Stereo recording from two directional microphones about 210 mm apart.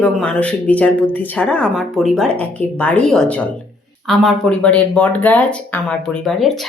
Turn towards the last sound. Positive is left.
turn(degrees=0)  # may be behind; listen again after turning